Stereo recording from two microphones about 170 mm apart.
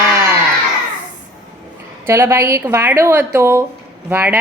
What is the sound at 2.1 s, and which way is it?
A woman's voice, 15° right (ahead or behind).